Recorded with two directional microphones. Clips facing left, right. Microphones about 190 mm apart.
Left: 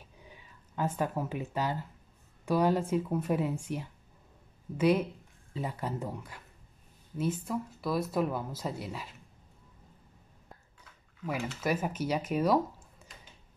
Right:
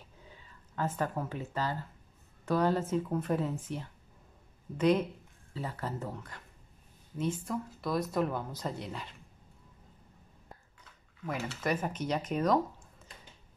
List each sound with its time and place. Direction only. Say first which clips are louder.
0.2 s a woman's voice: left 1 dB; 15° left (ahead or behind)
10.8 s speech: left 4 dB; 5° left (ahead or behind)